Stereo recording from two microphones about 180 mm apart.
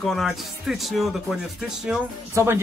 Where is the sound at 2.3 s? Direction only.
15° right (ahead or behind).